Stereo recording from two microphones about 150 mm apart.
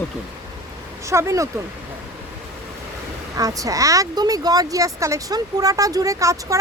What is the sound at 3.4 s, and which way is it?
Speech, 25° right (ahead or behind).